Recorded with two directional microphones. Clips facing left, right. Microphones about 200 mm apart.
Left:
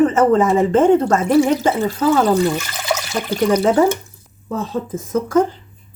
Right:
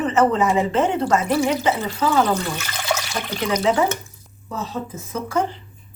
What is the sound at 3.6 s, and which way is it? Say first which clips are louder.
Speech: left 5 dB; 45° left (ahead or behind).